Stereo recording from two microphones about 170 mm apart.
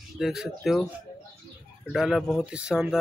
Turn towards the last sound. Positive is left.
turn(degrees=-5)  # may be behind; listen again after turning